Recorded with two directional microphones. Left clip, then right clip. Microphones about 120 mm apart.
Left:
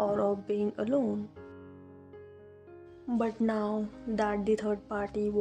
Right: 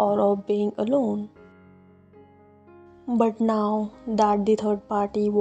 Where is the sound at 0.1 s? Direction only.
25° right (ahead or behind).